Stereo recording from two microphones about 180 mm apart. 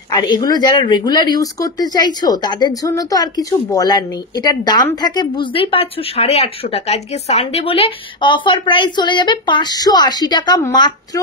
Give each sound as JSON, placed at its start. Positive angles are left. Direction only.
{"t": 0.1, "sound": "speech", "side_deg": 25}